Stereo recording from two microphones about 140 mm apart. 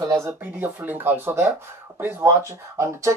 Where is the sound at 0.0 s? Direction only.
20° right (ahead or behind).